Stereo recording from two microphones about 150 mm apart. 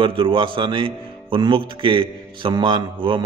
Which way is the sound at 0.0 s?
35° right (ahead or behind).